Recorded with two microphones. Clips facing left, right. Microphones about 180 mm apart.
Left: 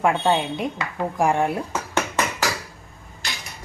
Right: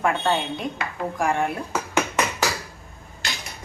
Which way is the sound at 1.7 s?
10° right (ahead or behind).